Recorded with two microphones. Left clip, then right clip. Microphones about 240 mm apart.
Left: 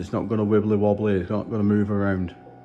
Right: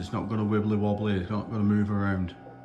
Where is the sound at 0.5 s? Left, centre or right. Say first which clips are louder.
Left 8 dB; centre.